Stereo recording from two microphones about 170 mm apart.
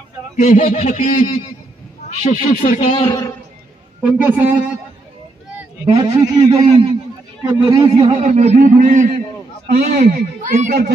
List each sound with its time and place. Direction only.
0.4 s a sound: 45° left (ahead or behind)
3.0 s a man's voice: 20° left (ahead or behind)
4.0 s a man's voice: 10° right (ahead or behind)
5.9 s a man's voice: 25° right (ahead or behind)
8.0 s speech: 45° right (ahead or behind)
9.7 s speech: 55° right (ahead or behind)